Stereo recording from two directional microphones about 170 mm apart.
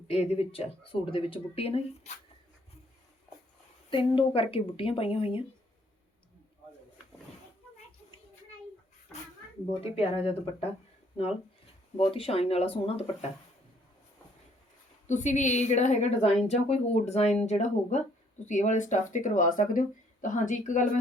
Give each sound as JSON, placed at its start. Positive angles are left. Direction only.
{"t": 0.1, "sound": "speech", "side_deg": 35}
{"t": 3.8, "sound": "speech", "side_deg": 30}
{"t": 9.8, "sound": "speech", "side_deg": 35}
{"t": 15.0, "sound": "a woman's voice", "side_deg": 45}